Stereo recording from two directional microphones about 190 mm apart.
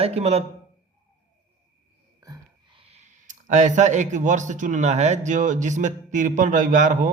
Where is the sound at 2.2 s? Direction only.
20° right (ahead or behind).